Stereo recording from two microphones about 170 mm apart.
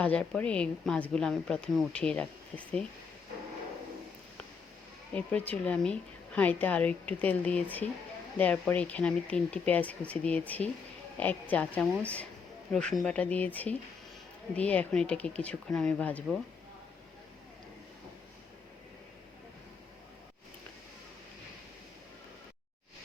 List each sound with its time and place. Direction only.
0.0 s a woman's voice: 5° left (ahead or behind)
5.1 s a woman's voice: 10° left (ahead or behind)